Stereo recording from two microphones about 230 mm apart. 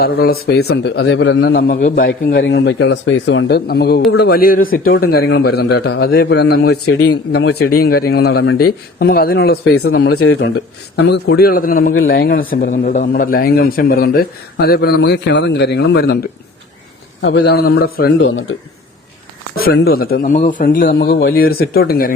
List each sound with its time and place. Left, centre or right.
0.0 s a man's voice: left
8.4 s speech: left
8.6 s a man's voice: left
9.6 s speech: left
10.9 s a man's voice: left
19.5 s speech: left